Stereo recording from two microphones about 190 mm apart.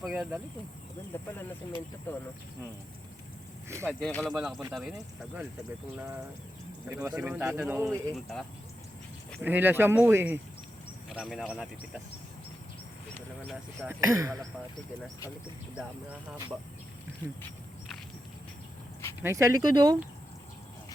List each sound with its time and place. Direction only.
0.0 s speech: 5° right (ahead or behind)
1.4 s speech: 10° left (ahead or behind)
3.8 s speech: 5° left (ahead or behind)
6.8 s a man's voice: 10° right (ahead or behind)
11.1 s speech: centre (ahead or behind)
13.1 s a sound: 10° left (ahead or behind)
13.8 s a man's voice: 15° right (ahead or behind)
19.2 s a man's voice: 15° right (ahead or behind)